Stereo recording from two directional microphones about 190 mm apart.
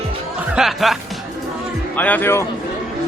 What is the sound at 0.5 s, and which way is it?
Speech, centre (ahead or behind).